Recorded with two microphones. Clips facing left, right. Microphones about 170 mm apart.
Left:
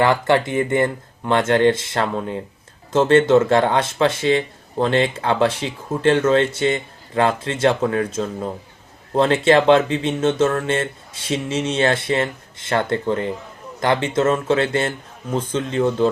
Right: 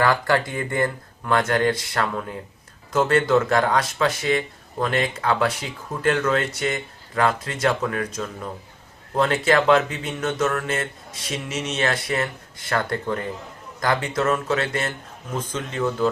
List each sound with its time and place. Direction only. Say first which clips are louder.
0.0 s speech: left 4 dB; 25° left (ahead or behind)